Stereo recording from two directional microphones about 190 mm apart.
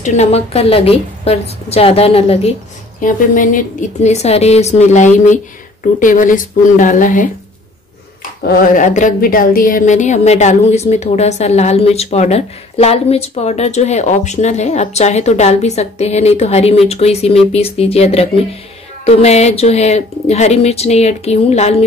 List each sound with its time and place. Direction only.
0.0 s speech: 35° left (ahead or behind)
3.0 s speech: 45° left (ahead or behind)
8.5 s speech: 45° left (ahead or behind)